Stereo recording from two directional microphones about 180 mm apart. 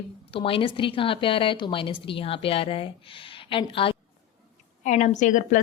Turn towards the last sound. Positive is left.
turn(degrees=45)  # may be behind; listen again after turning